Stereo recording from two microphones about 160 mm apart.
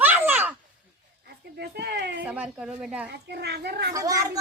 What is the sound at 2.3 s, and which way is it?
Speech, 5° right (ahead or behind).